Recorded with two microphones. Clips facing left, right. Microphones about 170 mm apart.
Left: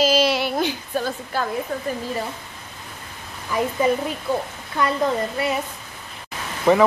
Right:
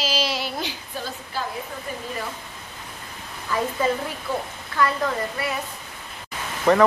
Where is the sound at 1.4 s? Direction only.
55° left (ahead or behind).